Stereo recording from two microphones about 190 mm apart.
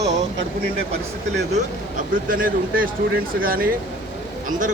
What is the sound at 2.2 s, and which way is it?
A man's voice, 45° right (ahead or behind).